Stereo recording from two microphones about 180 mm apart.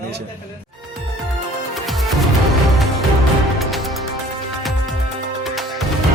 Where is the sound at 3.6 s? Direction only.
Centre (ahead or behind).